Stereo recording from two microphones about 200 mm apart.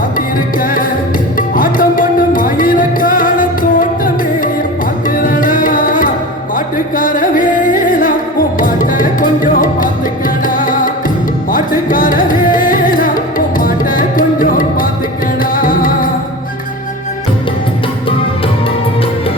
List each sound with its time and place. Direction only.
0.6 s music: 45° left (ahead or behind)
5.0 s tabla: 45° left (ahead or behind)
6.7 s music: 45° left (ahead or behind)